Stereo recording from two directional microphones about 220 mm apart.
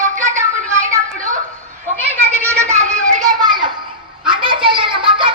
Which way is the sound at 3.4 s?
20° right (ahead or behind).